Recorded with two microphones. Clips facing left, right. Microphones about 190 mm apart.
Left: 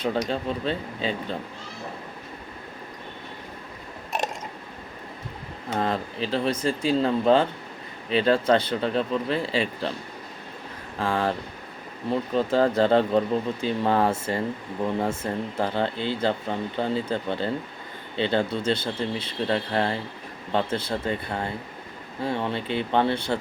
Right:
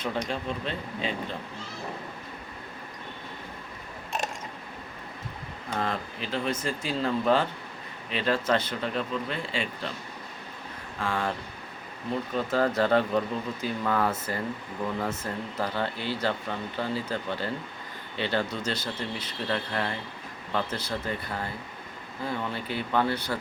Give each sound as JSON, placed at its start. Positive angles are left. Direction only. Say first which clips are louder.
{"t": 0.3, "sound": "speech", "louder": "left 5 dB", "side_deg": 35}
{"t": 5.8, "sound": "speech", "louder": "left 6 dB", "side_deg": 35}
{"t": 10.9, "sound": "speech", "louder": "left 5 dB", "side_deg": 35}